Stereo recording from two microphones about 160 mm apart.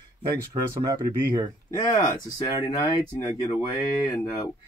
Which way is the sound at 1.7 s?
25° left (ahead or behind).